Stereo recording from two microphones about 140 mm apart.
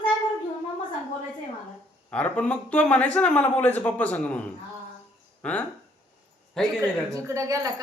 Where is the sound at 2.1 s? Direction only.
10° left (ahead or behind).